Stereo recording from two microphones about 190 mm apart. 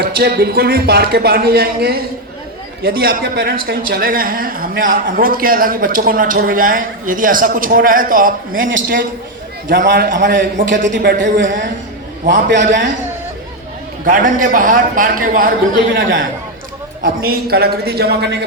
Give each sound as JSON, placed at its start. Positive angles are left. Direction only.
{"t": 0.0, "sound": "a woman's voice", "side_deg": -55}
{"t": 9.6, "sound": "a man's voice", "side_deg": -55}
{"t": 14.0, "sound": "a woman's voice", "side_deg": -45}
{"t": 15.9, "sound": "a man's voice", "side_deg": -85}
{"t": 17.0, "sound": "a man's voice", "side_deg": -50}